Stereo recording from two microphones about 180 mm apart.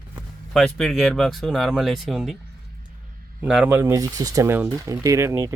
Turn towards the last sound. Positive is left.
turn(degrees=-15)  # may be behind; listen again after turning